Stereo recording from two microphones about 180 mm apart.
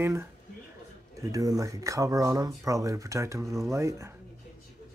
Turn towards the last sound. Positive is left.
turn(degrees=-15)  # may be behind; listen again after turning